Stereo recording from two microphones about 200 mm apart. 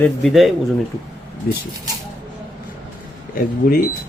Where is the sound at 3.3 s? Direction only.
45° left (ahead or behind).